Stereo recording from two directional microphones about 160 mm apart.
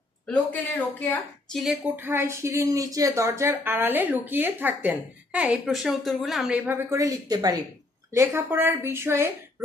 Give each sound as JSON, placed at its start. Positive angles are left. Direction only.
{"t": 0.3, "sound": "speech", "side_deg": 10}
{"t": 1.6, "sound": "a woman's voice", "side_deg": 0}
{"t": 2.0, "sound": "a woman's voice", "side_deg": -15}